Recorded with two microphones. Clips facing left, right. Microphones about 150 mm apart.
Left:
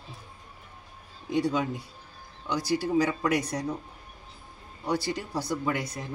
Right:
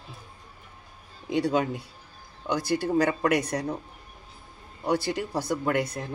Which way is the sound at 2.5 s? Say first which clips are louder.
Right 1 dB; 55° right (ahead or behind).